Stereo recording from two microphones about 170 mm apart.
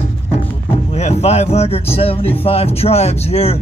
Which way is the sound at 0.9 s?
40° left (ahead or behind).